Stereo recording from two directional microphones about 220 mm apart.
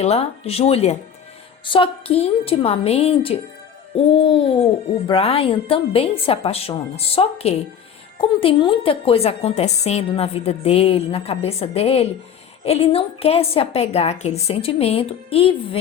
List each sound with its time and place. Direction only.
0.0 s a woman's voice: 30° left (ahead or behind)